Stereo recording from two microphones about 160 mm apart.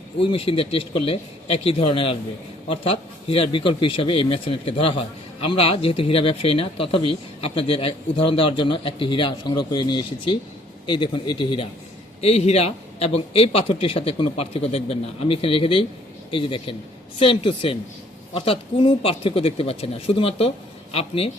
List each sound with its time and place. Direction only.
0.2 s speech: 35° left (ahead or behind)